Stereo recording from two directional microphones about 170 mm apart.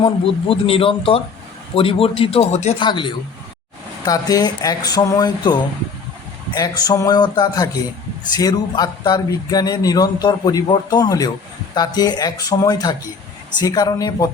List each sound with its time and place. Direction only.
0.0 s speech: 35° left (ahead or behind)
2.8 s speech: 30° left (ahead or behind)